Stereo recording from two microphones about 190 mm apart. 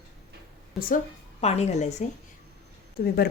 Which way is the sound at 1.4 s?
35° left (ahead or behind).